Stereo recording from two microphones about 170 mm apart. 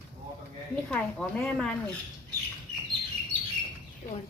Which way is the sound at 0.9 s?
5° left (ahead or behind).